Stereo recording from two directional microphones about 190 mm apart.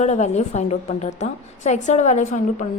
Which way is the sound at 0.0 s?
35° left (ahead or behind).